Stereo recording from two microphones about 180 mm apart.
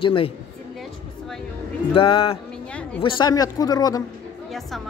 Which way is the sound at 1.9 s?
30° left (ahead or behind).